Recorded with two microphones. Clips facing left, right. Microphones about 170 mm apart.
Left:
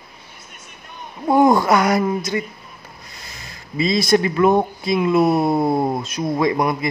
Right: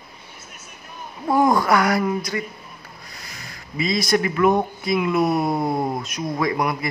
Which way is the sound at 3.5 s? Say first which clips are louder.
Left 4 dB; 25° left (ahead or behind).